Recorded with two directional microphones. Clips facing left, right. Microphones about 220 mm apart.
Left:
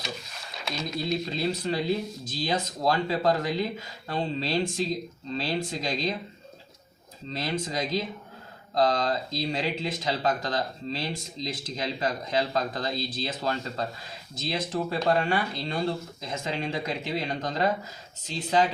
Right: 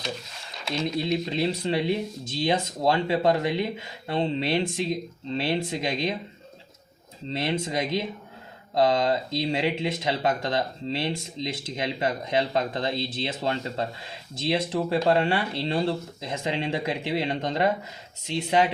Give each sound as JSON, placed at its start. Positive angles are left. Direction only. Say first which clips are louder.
{"t": 0.7, "sound": "speech", "louder": "right 4 dB", "side_deg": -25}
{"t": 7.3, "sound": "speech", "louder": "right 3 dB", "side_deg": -25}